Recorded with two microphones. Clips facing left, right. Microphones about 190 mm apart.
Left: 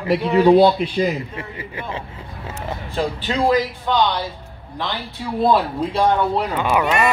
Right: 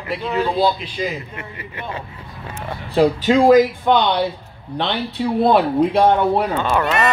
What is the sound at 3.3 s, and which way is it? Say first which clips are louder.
Speech: right 6 dB; 45° right (ahead or behind).